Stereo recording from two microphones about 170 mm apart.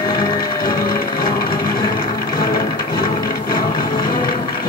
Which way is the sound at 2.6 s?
25° left (ahead or behind).